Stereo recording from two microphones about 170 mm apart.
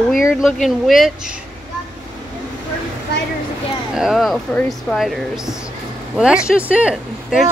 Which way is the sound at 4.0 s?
Centre (ahead or behind).